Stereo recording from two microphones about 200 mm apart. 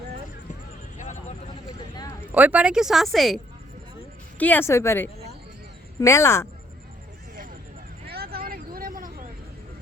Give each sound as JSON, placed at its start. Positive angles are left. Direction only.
{"t": 2.3, "sound": "speech", "side_deg": -5}
{"t": 8.1, "sound": "vehicle", "side_deg": -50}